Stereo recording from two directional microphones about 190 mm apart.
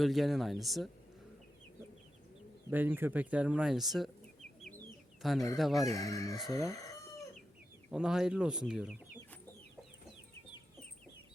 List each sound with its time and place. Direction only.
0.0 s speech: centre (ahead or behind)
2.6 s speech: 10° right (ahead or behind)
5.2 s speech: centre (ahead or behind)
5.9 s chicken: 15° left (ahead or behind)
7.9 s speech: 5° right (ahead or behind)